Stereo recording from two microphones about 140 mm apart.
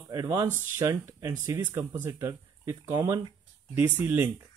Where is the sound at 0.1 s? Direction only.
25° right (ahead or behind).